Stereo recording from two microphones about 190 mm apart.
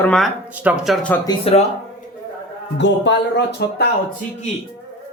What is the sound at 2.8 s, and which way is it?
Speech, 70° left (ahead or behind).